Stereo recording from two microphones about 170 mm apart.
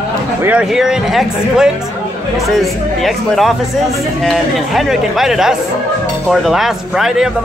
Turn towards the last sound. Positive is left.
turn(degrees=-5)  # may be behind; listen again after turning